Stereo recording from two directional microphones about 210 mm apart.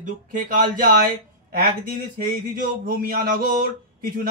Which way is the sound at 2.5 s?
40° right (ahead or behind).